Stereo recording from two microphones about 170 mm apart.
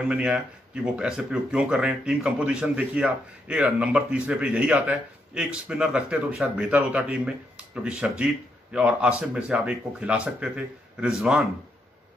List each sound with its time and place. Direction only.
0.0 s speech: 5° right (ahead or behind)